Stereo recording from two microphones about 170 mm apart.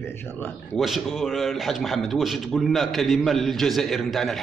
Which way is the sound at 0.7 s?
Centre (ahead or behind).